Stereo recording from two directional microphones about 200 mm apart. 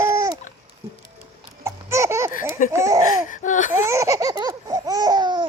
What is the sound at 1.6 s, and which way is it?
Laughter, 15° right (ahead or behind).